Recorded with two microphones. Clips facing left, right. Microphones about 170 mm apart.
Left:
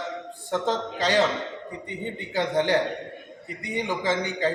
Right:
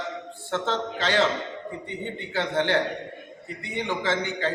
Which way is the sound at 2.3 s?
15° left (ahead or behind).